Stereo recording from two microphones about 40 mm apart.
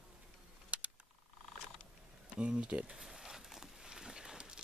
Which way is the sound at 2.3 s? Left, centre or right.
Right.